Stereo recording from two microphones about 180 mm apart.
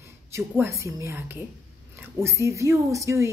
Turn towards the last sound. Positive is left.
turn(degrees=-15)  # may be behind; listen again after turning